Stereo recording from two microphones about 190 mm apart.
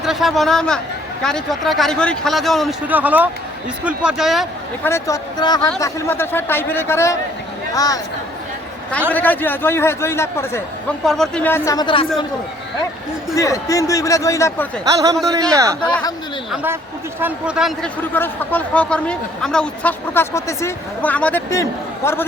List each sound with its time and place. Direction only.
0.0 s a man's voice: centre (ahead or behind)
4.8 s speech: 15° left (ahead or behind)
9.1 s speech: 10° left (ahead or behind)
11.0 s speech: centre (ahead or behind); by 12.0 s 25° left (ahead or behind)
13.3 s speech: 15° left (ahead or behind)
14.8 s speech: 20° right (ahead or behind)
15.8 s speech: 20° left (ahead or behind)
17.2 s a man's voice: 5° right (ahead or behind)
18.1 s speech: 10° left (ahead or behind)